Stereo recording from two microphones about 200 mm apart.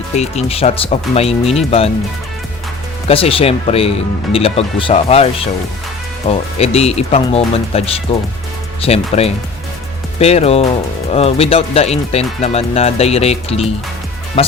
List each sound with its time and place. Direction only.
0.2 s speech: 30° left (ahead or behind)
3.1 s speech: 30° left (ahead or behind)